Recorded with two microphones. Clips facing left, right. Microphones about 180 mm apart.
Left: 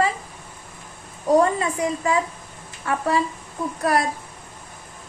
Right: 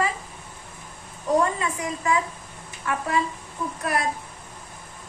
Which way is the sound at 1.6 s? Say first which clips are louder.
Left 5 dB; 35° left (ahead or behind).